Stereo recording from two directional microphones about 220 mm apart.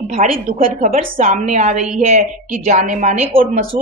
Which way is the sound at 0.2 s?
40° right (ahead or behind).